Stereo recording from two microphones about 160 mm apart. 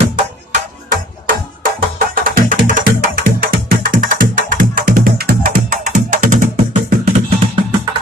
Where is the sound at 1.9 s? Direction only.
60° right (ahead or behind).